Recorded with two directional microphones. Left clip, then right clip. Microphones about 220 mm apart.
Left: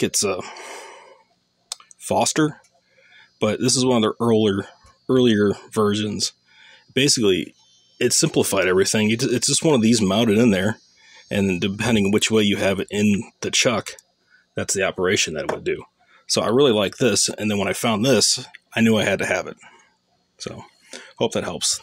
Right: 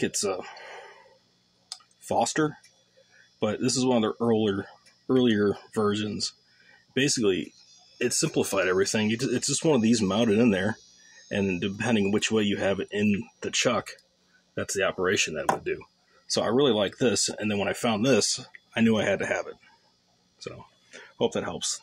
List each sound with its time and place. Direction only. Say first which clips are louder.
0.0 s speech: left 6 dB; 45° left (ahead or behind)
1.7 s clicking: left 6 dB; 50° left (ahead or behind)
3.3 s speech: left 7 dB; 45° left (ahead or behind)